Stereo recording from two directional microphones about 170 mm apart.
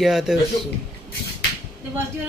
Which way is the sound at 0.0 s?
Centre (ahead or behind).